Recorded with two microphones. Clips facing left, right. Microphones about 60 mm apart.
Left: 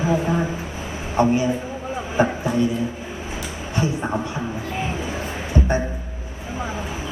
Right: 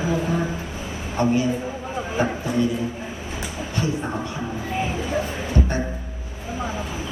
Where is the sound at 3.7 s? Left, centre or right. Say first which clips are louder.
Left 2 dB; left.